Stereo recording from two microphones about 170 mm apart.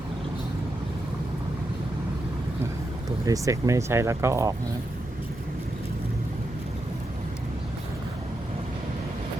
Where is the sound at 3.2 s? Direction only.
20° right (ahead or behind).